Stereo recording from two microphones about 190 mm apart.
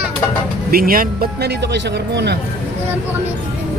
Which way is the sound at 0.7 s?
50° right (ahead or behind).